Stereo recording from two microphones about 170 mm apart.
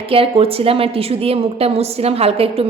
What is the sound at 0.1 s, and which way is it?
A woman's voice, 35° right (ahead or behind).